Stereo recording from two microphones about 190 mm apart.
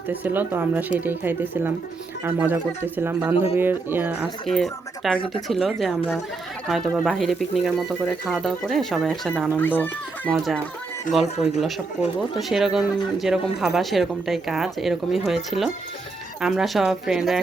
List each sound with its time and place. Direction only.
0.1 s speech: 10° right (ahead or behind)
3.3 s speech: 30° left (ahead or behind)
3.6 s speech: 10° right (ahead or behind)